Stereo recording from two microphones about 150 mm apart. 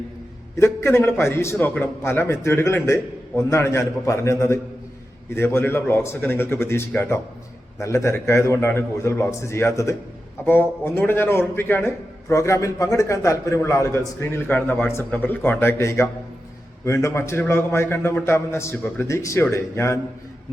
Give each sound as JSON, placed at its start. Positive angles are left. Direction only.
{"t": 0.5, "sound": "a man's voice", "side_deg": 15}